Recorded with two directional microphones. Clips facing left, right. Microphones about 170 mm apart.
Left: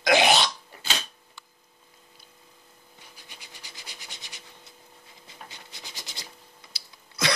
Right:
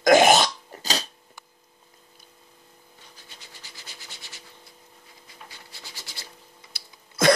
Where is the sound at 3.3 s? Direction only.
15° left (ahead or behind).